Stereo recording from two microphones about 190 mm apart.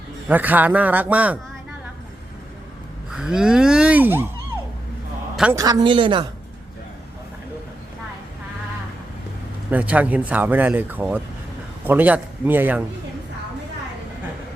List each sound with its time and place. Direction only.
0.3 s speech: 10° right (ahead or behind)
3.1 s speech: 5° right (ahead or behind)
5.5 s speech: 20° right (ahead or behind)
9.6 s speech: 10° right (ahead or behind)